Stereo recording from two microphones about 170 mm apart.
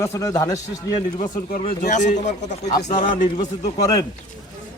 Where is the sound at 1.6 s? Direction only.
45° left (ahead or behind).